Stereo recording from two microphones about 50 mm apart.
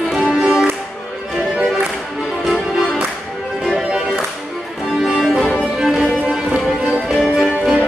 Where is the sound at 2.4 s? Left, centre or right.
Centre.